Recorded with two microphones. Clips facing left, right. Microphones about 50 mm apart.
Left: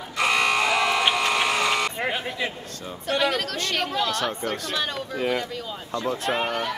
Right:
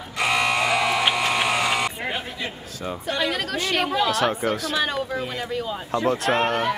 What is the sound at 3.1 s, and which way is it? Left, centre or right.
A woman's voice, centre.